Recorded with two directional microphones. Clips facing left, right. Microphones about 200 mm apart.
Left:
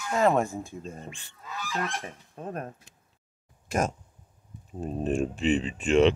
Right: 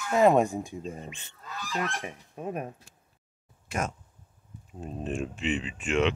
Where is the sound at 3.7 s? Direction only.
40° left (ahead or behind).